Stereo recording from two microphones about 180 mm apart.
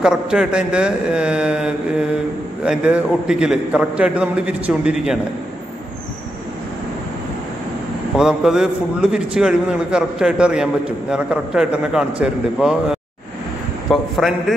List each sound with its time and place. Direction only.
0.0 s a man's voice: 5° right (ahead or behind)
8.2 s a man's voice: 5° right (ahead or behind)